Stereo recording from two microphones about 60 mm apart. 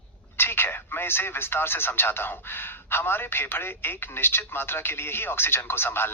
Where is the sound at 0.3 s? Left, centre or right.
Left.